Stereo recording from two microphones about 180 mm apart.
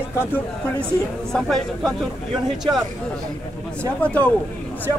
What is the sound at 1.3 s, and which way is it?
Speech, 5° left (ahead or behind).